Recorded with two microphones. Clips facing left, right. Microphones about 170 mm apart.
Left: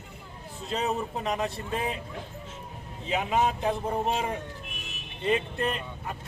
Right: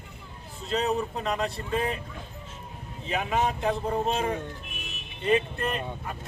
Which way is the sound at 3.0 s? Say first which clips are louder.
Left 1 dB; 15° left (ahead or behind).